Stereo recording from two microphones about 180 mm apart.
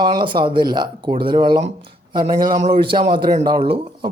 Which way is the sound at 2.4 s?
45° right (ahead or behind).